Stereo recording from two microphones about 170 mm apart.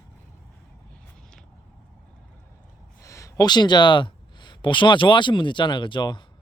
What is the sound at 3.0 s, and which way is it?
Speech, 20° left (ahead or behind).